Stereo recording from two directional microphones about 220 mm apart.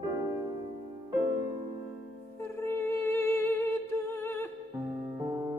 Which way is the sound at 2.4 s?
10° left (ahead or behind).